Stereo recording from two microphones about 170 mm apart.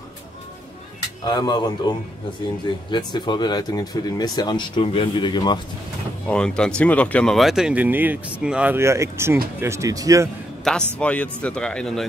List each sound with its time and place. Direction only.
1.2 s speech: 25° left (ahead or behind)
6.2 s speech: 5° left (ahead or behind); by 10.3 s 20° right (ahead or behind)
10.6 s a man's voice: 5° left (ahead or behind)